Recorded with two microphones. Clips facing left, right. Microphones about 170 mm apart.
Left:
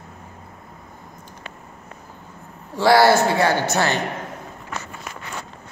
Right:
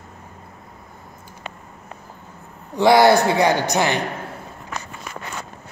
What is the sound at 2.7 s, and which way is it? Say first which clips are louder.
A man's voice: right 1 dB; 20° right (ahead or behind).